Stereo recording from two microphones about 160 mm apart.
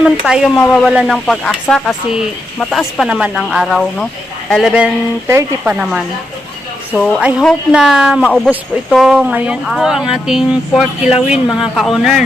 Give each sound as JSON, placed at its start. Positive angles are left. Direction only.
{"t": 0.0, "sound": "speech", "side_deg": -5}
{"t": 5.3, "sound": "speech", "side_deg": -15}
{"t": 6.9, "sound": "speech", "side_deg": 5}
{"t": 7.2, "sound": "speech", "side_deg": -5}